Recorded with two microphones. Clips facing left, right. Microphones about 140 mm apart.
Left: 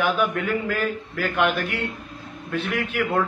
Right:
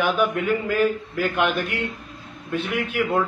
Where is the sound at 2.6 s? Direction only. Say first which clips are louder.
Right 1 dB; 10° right (ahead or behind).